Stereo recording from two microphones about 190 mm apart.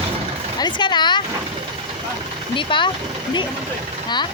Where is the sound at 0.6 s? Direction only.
25° left (ahead or behind).